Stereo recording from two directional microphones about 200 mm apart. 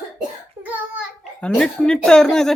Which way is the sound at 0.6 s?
5° right (ahead or behind).